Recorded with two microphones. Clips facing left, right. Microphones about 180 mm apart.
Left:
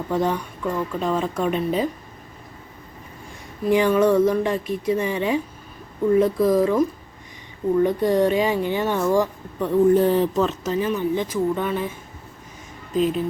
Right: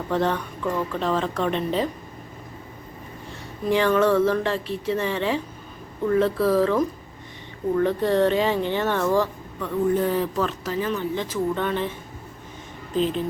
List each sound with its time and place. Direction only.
0.1 s speech: 10° left (ahead or behind)
3.7 s speech: 15° left (ahead or behind)
9.6 s speech: 30° left (ahead or behind); by 11.9 s 10° left (ahead or behind)
13.0 s speech: 5° left (ahead or behind)